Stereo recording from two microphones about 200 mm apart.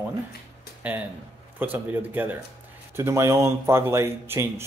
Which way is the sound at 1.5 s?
10° right (ahead or behind).